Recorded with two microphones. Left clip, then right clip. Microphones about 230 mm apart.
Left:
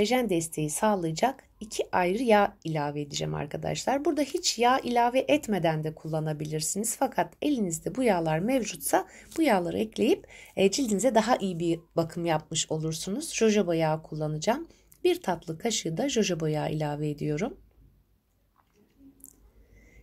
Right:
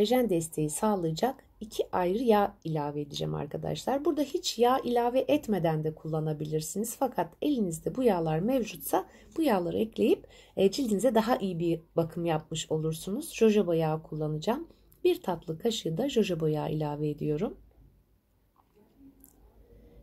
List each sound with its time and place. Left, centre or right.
0.0 s speech: left